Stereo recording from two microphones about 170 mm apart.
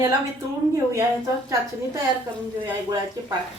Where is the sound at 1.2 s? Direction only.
20° right (ahead or behind).